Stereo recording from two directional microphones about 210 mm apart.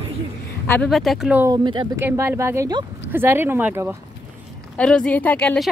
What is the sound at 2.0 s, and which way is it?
Speech, 10° right (ahead or behind).